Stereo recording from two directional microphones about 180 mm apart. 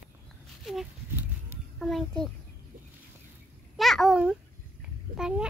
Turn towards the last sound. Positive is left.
turn(degrees=-5)  # may be behind; listen again after turning